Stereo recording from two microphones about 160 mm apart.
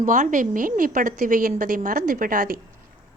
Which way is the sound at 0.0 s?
55° right (ahead or behind).